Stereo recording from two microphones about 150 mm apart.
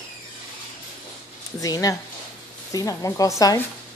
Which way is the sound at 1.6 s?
25° left (ahead or behind).